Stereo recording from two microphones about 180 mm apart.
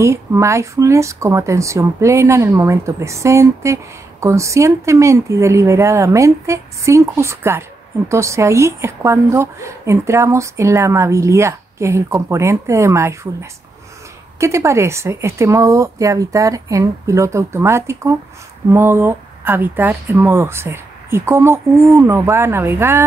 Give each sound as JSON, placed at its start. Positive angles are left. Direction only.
{"t": 0.0, "sound": "speech", "side_deg": -15}